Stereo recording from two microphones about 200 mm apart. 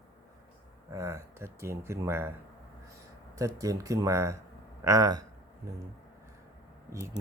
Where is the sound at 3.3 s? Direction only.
15° right (ahead or behind).